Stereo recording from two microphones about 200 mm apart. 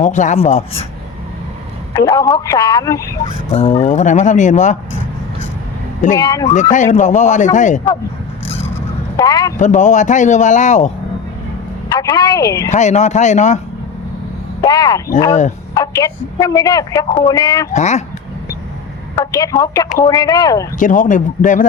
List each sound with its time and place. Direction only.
0.0 s speech: 35° left (ahead or behind)
2.0 s speech: 20° left (ahead or behind)
3.8 s speech: 35° left (ahead or behind)
6.1 s a woman's voice: 15° left (ahead or behind)
6.5 s speech: 40° left (ahead or behind)
8.6 s a sound: 15° left (ahead or behind)
9.6 s speech: 35° left (ahead or behind)
11.9 s speech: 20° left (ahead or behind)
12.7 s speech: 35° left (ahead or behind)
14.6 s a woman's voice: 20° left (ahead or behind)
17.7 s speech: 35° left (ahead or behind)
19.1 s speech: 20° left (ahead or behind)
20.7 s speech: 40° left (ahead or behind)